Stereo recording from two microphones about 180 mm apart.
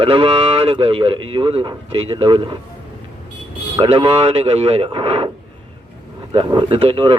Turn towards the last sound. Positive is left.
turn(degrees=-30)  # may be behind; listen again after turning